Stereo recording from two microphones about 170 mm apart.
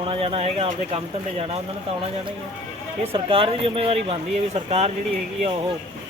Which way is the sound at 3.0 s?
35° right (ahead or behind).